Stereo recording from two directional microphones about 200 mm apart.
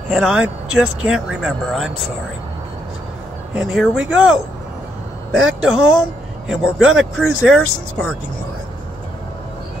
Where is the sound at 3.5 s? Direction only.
5° right (ahead or behind).